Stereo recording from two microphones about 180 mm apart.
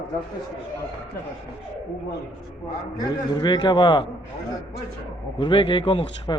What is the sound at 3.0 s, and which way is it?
A man's voice, 25° left (ahead or behind).